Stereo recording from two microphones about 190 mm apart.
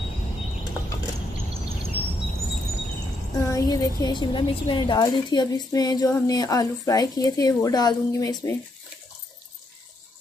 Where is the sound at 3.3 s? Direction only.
15° left (ahead or behind).